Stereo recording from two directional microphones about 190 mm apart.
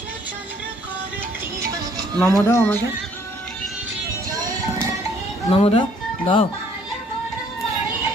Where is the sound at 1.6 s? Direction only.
15° right (ahead or behind).